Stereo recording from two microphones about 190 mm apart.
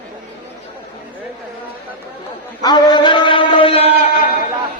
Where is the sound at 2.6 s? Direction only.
20° left (ahead or behind).